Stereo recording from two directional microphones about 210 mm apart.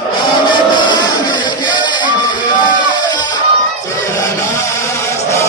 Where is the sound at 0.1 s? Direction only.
20° left (ahead or behind).